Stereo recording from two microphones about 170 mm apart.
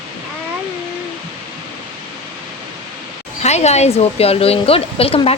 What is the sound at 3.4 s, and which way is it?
Speech, 40° left (ahead or behind).